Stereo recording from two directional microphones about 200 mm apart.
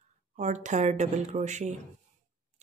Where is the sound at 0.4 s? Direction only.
35° right (ahead or behind).